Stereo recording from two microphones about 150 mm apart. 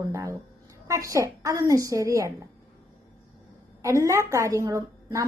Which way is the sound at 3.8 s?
20° right (ahead or behind).